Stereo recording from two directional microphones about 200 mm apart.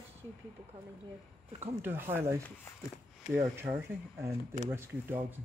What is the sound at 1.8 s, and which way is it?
Speech, 10° right (ahead or behind).